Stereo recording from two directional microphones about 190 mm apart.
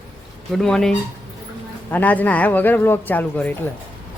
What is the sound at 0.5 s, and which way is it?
A woman's voice, 5° left (ahead or behind).